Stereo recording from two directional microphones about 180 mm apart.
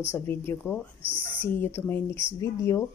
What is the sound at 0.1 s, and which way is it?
Speech, 15° left (ahead or behind).